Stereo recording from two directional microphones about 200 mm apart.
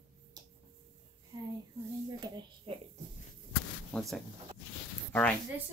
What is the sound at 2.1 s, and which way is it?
Speech, 20° right (ahead or behind).